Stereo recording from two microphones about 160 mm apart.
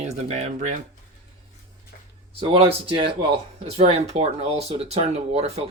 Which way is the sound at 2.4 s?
35° right (ahead or behind).